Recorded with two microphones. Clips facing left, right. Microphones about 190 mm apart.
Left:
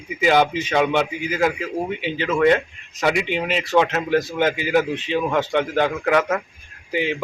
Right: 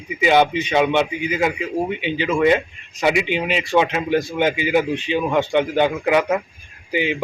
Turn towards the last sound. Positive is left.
turn(degrees=-5)  # may be behind; listen again after turning